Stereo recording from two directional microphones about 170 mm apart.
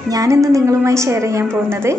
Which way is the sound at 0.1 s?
20° right (ahead or behind).